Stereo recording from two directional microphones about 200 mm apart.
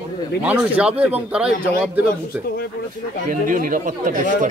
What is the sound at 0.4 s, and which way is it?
Speech, 5° right (ahead or behind).